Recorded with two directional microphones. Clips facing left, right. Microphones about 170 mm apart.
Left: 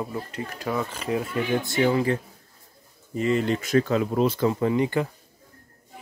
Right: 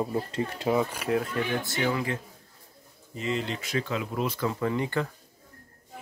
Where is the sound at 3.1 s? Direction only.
50° left (ahead or behind).